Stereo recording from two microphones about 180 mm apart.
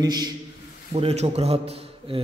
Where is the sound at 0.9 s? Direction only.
35° right (ahead or behind).